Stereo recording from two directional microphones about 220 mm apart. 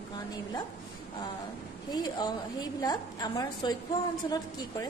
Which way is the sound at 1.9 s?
20° left (ahead or behind).